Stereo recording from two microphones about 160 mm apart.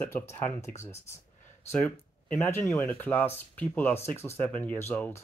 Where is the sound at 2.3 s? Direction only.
15° left (ahead or behind).